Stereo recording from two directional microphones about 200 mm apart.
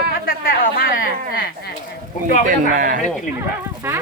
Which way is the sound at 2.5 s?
40° right (ahead or behind).